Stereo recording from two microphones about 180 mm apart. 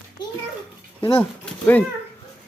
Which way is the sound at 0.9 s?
10° left (ahead or behind).